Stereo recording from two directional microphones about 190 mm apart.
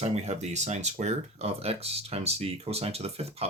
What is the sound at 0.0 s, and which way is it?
Speech, 35° right (ahead or behind).